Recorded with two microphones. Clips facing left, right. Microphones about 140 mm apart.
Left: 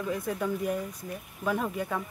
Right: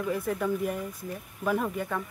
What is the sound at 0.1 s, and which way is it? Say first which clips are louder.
Speech: right 2 dB; centre (ahead or behind).